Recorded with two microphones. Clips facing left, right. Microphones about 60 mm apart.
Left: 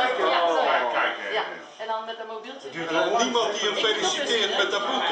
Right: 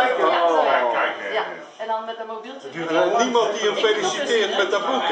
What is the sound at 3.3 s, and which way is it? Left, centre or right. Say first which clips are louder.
A man's voice: right 5 dB; centre.